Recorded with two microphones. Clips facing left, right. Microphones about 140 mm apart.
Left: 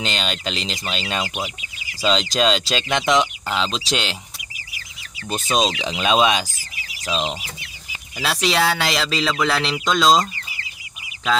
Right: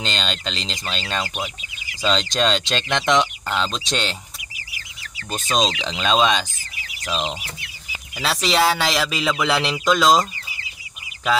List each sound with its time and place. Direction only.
0.0 s speech: 10° left (ahead or behind)
5.3 s speech: 5° left (ahead or behind)
7.2 s chicken: 20° left (ahead or behind)
8.2 s speech: centre (ahead or behind)
9.1 s speech: 10° right (ahead or behind)